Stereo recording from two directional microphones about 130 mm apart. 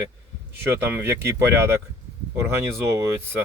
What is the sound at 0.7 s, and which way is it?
Speech, 20° right (ahead or behind).